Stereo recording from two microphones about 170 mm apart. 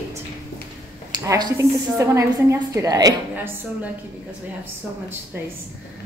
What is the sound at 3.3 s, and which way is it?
Speech, 10° right (ahead or behind).